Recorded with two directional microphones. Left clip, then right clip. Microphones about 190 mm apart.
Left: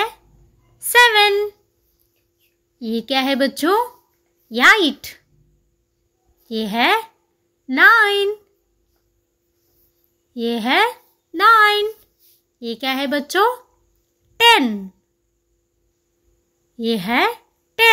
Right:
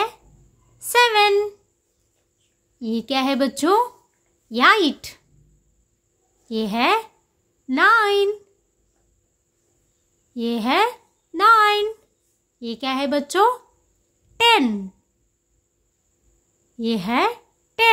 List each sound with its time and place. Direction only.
0.7 s a sound: 10° right (ahead or behind)
2.8 s speech: 10° right (ahead or behind)
6.5 s speech: 10° right (ahead or behind)
10.3 s speech: 10° right (ahead or behind)
16.7 s speech: 5° right (ahead or behind)